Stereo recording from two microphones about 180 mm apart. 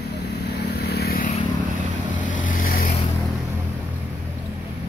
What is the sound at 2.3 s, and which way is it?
Vehicle, 45° left (ahead or behind).